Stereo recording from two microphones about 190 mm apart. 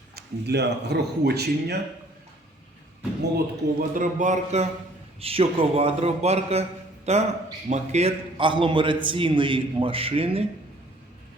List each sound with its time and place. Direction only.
0.2 s speech: 60° right (ahead or behind)
3.3 s speech: 50° right (ahead or behind)
5.2 s a man's voice: 30° right (ahead or behind)